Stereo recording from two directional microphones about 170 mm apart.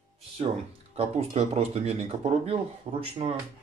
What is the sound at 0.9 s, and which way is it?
Speech, 40° right (ahead or behind).